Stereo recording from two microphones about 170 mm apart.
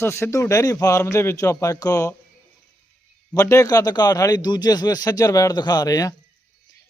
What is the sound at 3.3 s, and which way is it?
Speech, 15° left (ahead or behind).